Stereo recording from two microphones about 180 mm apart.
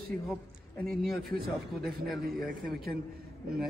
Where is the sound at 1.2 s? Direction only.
55° right (ahead or behind).